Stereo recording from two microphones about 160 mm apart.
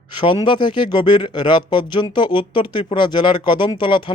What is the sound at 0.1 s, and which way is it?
Speech, 30° left (ahead or behind).